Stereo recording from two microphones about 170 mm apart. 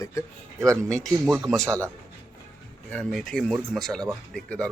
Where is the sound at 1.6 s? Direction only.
15° right (ahead or behind).